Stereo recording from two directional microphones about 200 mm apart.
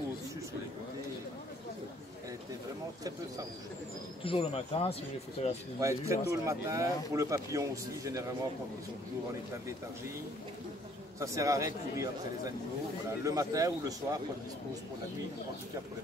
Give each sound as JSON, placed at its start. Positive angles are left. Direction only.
{"t": 4.2, "sound": "speech", "side_deg": 25}
{"t": 5.8, "sound": "speech", "side_deg": -15}
{"t": 11.1, "sound": "speech", "side_deg": -15}
{"t": 13.2, "sound": "speech", "side_deg": -15}